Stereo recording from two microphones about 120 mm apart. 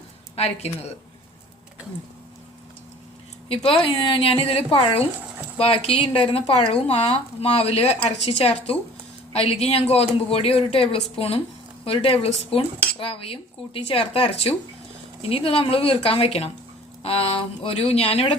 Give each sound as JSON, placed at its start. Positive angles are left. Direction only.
{"t": 0.3, "sound": "speech", "side_deg": 60}
{"t": 3.5, "sound": "speech", "side_deg": 50}